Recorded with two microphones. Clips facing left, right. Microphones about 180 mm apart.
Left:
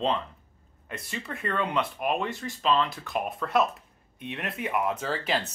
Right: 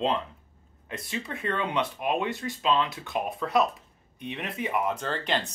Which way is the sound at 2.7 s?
20° right (ahead or behind).